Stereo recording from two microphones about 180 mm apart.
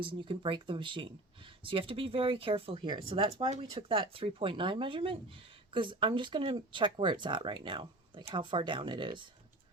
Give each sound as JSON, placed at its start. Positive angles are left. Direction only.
{"t": 0.0, "sound": "speech", "side_deg": -30}